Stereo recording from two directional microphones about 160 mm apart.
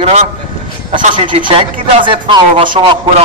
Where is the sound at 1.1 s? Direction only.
30° right (ahead or behind).